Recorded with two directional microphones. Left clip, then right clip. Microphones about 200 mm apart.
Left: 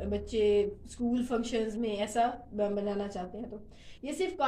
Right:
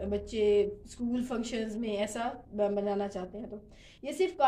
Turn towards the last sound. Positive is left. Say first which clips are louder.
# right 3 dB
turn(degrees=-35)  # may be behind; listen again after turning